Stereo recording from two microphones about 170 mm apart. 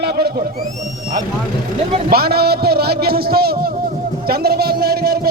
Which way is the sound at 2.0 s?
65° right (ahead or behind).